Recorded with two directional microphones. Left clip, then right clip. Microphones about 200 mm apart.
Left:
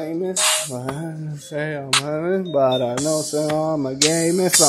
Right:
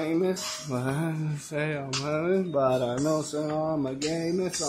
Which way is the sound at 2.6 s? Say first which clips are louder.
Left 9 dB; 15° left (ahead or behind).